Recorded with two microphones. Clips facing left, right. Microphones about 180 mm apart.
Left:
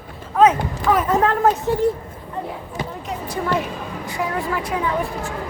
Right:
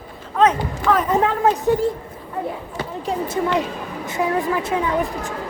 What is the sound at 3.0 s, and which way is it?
A woman's voice, 25° right (ahead or behind).